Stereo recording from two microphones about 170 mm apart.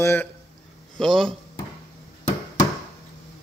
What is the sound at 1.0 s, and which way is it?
Speech, centre (ahead or behind).